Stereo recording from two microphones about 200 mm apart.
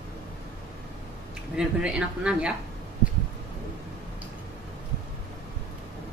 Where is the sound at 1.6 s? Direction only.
5° right (ahead or behind).